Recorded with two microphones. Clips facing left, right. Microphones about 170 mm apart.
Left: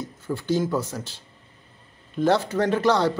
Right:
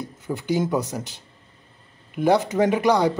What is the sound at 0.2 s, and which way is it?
Speech, 15° right (ahead or behind).